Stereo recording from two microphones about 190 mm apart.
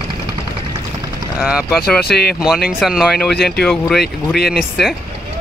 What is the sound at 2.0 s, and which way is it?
Speech, 60° left (ahead or behind).